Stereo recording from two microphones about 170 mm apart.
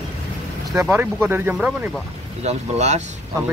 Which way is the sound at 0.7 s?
15° right (ahead or behind).